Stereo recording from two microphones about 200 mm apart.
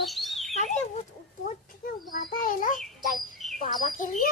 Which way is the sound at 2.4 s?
45° left (ahead or behind).